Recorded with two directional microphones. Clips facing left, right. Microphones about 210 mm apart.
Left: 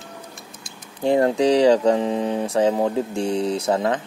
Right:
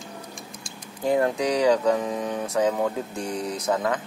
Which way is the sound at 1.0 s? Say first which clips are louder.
Left 5 dB; 30° left (ahead or behind).